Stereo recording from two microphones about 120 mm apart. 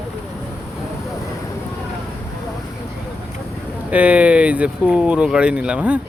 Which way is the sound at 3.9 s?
10° right (ahead or behind).